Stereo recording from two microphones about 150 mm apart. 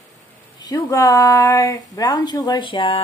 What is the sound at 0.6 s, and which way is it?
Speech, 25° left (ahead or behind).